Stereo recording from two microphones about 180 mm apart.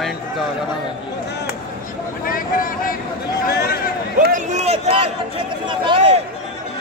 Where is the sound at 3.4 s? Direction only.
60° left (ahead or behind).